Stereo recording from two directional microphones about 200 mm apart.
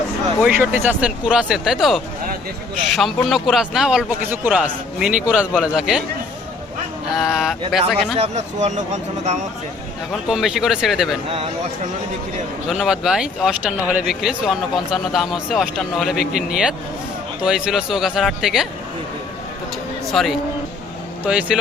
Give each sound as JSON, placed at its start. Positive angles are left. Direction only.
{"t": 0.4, "sound": "a man's voice", "side_deg": -10}
{"t": 7.1, "sound": "a man's voice", "side_deg": 0}
{"t": 8.2, "sound": "speech", "side_deg": -35}
{"t": 10.1, "sound": "a man's voice", "side_deg": 0}
{"t": 12.6, "sound": "a man's voice", "side_deg": 0}
{"t": 20.1, "sound": "a man's voice", "side_deg": 0}